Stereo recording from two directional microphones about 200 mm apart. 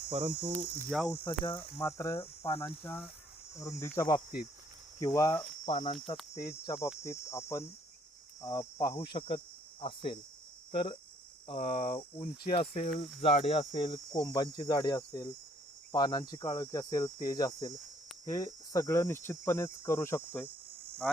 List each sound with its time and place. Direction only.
0.1 s cricket: 25° right (ahead or behind)
0.9 s cricket: centre (ahead or behind)
1.5 s speech: 15° left (ahead or behind)
5.7 s cricket: 30° left (ahead or behind)
6.7 s speech: 15° left (ahead or behind)
9.1 s cricket: 25° left (ahead or behind)
11.4 s speech: 30° left (ahead or behind)
11.9 s cricket: 25° left (ahead or behind)
12.5 s speech: 35° left (ahead or behind)
13.2 s cricket: 30° left (ahead or behind)
14.3 s speech: 20° left (ahead or behind)
15.9 s cricket: 20° left (ahead or behind)
18.3 s speech: 15° left (ahead or behind)
21.0 s cricket: centre (ahead or behind)